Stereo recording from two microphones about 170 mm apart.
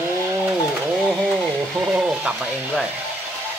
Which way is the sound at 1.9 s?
10° right (ahead or behind).